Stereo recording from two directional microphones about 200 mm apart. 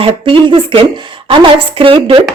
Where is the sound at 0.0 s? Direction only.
25° right (ahead or behind).